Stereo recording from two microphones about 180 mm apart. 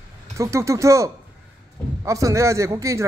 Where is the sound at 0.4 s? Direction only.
15° right (ahead or behind).